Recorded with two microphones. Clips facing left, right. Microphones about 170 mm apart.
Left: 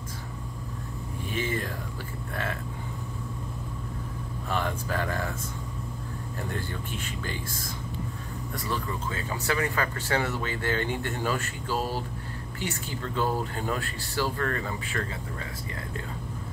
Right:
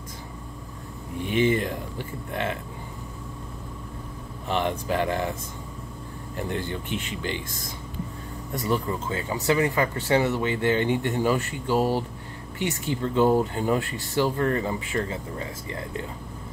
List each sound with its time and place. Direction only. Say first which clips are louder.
1.3 s a sound: right 9 dB; 20° right (ahead or behind)
4.5 s speech: right 5 dB; 20° right (ahead or behind)
8.5 s speech: right 7 dB; 25° right (ahead or behind)